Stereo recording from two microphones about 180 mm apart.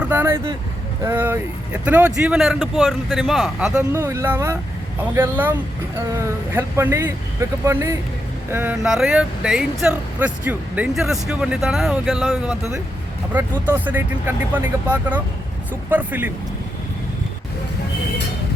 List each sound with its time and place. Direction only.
0.0 s speech: 10° right (ahead or behind)
3.9 s speech: 15° right (ahead or behind)
6.1 s speech: 15° right (ahead or behind)